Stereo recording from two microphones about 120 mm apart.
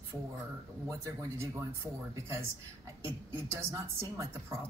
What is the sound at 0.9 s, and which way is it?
Speech, 25° right (ahead or behind).